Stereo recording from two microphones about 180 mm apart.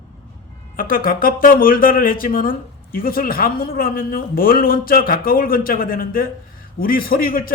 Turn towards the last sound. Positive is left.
turn(degrees=55)  # may be behind; listen again after turning